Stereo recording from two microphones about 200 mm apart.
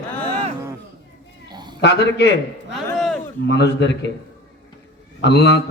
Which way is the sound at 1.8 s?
55° left (ahead or behind).